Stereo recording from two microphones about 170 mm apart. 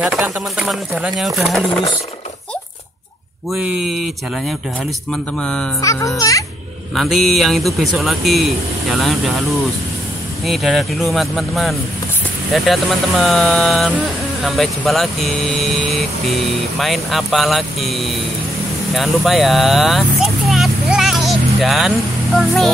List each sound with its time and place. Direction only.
0.0 s speech: centre (ahead or behind)
3.5 s speech: 5° right (ahead or behind)
5.8 s a child's voice: 20° left (ahead or behind)
7.0 s speech: centre (ahead or behind)
10.4 s speech: centre (ahead or behind)